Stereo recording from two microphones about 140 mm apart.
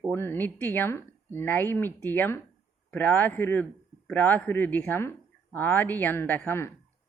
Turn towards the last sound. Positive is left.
turn(degrees=15)  # may be behind; listen again after turning